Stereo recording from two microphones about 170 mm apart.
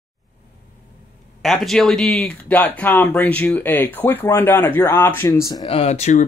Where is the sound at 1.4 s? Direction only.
Centre (ahead or behind); by 5.7 s 20° left (ahead or behind).